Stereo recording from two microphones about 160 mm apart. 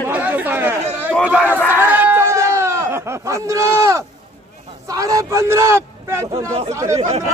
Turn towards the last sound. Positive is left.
turn(degrees=-40)  # may be behind; listen again after turning